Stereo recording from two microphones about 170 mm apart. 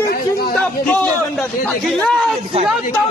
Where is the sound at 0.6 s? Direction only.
5° left (ahead or behind).